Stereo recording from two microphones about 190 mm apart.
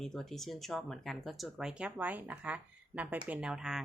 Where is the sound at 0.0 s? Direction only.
Centre (ahead or behind).